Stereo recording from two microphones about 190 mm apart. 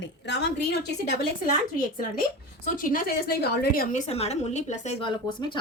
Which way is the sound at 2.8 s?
45° left (ahead or behind).